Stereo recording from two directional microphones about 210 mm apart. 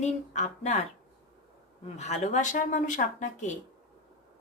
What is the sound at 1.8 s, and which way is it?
A woman's voice, 30° left (ahead or behind).